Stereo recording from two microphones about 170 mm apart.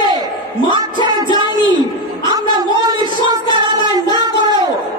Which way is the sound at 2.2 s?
25° right (ahead or behind).